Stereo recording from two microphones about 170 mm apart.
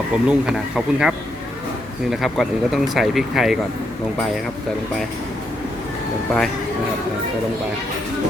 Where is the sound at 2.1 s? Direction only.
Centre (ahead or behind).